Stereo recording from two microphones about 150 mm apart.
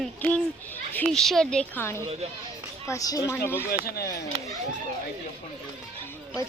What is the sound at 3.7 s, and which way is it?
Speech, 90° left.